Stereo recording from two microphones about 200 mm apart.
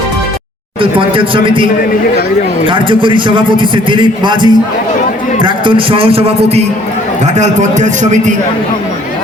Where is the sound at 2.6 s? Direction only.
25° right (ahead or behind).